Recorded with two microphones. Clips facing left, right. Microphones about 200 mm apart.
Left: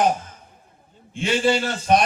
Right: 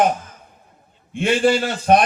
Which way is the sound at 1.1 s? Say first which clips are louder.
Right 3 dB; 55° right (ahead or behind).